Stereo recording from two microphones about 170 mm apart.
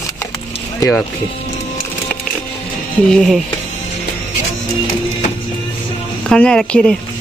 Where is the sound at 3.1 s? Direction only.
Centre (ahead or behind).